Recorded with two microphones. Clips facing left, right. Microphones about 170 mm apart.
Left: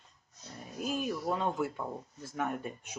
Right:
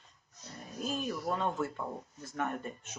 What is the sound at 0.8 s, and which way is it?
Speech, 10° left (ahead or behind).